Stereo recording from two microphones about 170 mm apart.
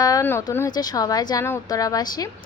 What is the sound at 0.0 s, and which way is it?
A woman's voice, 20° left (ahead or behind).